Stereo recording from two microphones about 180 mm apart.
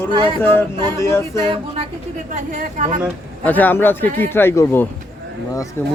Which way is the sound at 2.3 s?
45° right (ahead or behind).